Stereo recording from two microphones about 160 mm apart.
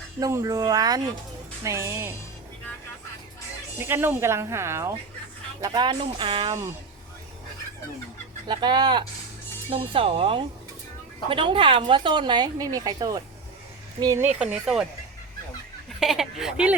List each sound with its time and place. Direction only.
0.2 s speech: 20° right (ahead or behind)
3.8 s speech: 15° right (ahead or behind); by 6.6 s 30° right (ahead or behind)
8.4 s speech: 25° right (ahead or behind)
14.2 s speech: 10° right (ahead or behind)
16.0 s speech: centre (ahead or behind)